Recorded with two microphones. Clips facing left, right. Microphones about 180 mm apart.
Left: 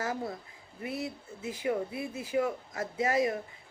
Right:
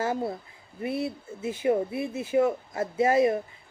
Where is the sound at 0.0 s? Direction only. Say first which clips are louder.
Right 6 dB; 30° right (ahead or behind).